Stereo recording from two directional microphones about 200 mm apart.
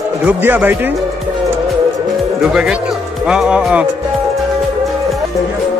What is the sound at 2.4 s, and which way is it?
Speech, centre (ahead or behind).